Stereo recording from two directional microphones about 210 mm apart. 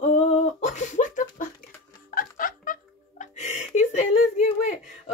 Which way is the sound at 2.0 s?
40° left (ahead or behind).